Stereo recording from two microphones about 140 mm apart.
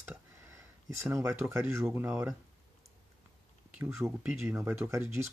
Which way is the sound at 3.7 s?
15° right (ahead or behind).